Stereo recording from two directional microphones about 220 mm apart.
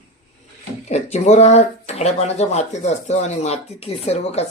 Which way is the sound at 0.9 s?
30° left (ahead or behind).